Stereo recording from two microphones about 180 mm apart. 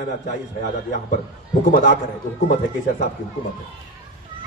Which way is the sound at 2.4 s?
40° left (ahead or behind).